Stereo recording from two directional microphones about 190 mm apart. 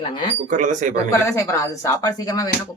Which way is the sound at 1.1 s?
15° left (ahead or behind).